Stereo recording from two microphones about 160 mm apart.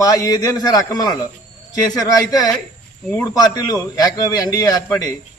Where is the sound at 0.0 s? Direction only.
20° left (ahead or behind).